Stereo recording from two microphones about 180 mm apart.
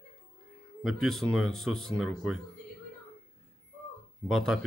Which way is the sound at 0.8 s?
Centre (ahead or behind).